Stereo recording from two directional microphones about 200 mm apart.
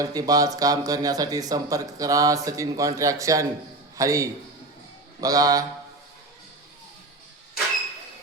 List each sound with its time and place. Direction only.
0.0 s a man's voice: 20° right (ahead or behind)